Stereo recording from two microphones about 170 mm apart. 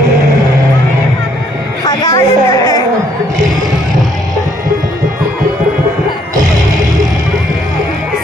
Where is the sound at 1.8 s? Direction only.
20° left (ahead or behind).